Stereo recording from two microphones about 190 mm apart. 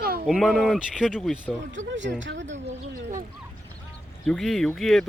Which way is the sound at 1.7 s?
75° right (ahead or behind).